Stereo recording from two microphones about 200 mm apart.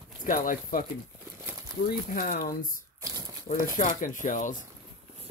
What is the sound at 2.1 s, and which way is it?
Speech, 40° left (ahead or behind).